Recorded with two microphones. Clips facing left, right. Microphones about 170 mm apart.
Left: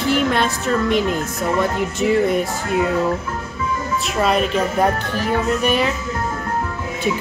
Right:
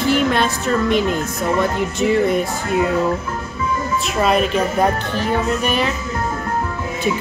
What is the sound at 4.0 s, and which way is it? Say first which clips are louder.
Speech: right 1 dB; centre (ahead or behind).